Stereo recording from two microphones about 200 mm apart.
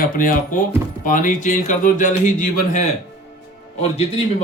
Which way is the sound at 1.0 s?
40° left (ahead or behind).